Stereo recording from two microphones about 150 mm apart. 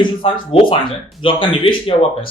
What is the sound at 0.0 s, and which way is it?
Speech, 35° left (ahead or behind).